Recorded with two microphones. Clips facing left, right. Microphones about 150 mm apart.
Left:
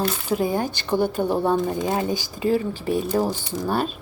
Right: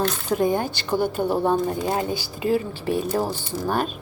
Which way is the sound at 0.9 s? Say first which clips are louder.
Left 1 dB; 10° right (ahead or behind).